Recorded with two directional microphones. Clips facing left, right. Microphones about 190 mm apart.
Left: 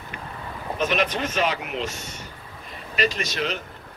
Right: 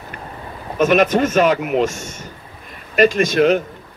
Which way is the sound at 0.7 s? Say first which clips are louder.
Right 10 dB; 50° right (ahead or behind).